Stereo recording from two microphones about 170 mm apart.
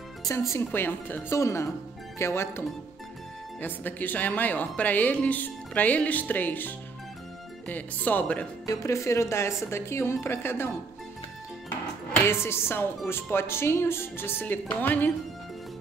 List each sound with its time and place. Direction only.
0.2 s speech: 15° left (ahead or behind)
3.6 s speech: 10° left (ahead or behind)
12.2 s speech: 15° left (ahead or behind)